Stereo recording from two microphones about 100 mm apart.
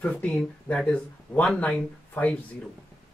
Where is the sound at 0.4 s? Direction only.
10° left (ahead or behind).